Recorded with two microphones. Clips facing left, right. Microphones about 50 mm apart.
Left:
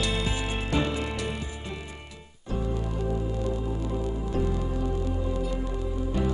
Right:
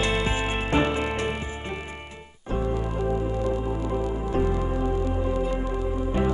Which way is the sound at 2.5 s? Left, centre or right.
Right.